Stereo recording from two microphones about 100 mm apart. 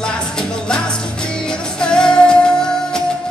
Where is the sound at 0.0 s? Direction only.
10° left (ahead or behind).